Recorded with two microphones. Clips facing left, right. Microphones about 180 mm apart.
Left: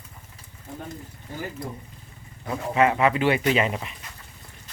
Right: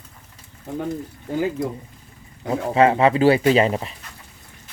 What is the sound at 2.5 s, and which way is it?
Speech, 30° right (ahead or behind).